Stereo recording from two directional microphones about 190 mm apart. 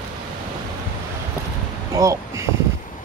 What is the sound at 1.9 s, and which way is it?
Speech, 15° right (ahead or behind).